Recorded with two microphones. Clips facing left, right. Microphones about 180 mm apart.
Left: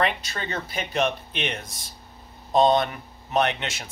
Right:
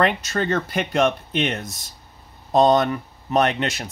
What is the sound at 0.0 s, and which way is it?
Speech, 50° right (ahead or behind).